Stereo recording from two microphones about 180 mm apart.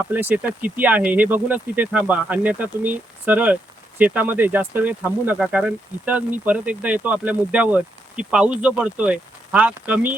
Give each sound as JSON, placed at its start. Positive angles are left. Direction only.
{"t": 0.1, "sound": "speech", "side_deg": -10}